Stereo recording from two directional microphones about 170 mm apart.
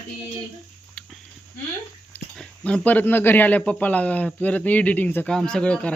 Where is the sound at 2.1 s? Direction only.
5° left (ahead or behind).